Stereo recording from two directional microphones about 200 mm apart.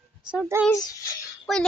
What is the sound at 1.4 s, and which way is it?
Speech, 5° left (ahead or behind).